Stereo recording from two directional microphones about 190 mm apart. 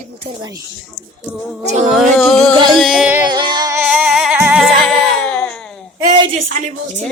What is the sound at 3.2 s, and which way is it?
Music, 25° right (ahead or behind).